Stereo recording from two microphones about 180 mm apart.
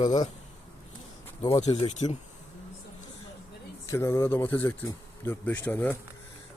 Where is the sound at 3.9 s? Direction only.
15° left (ahead or behind).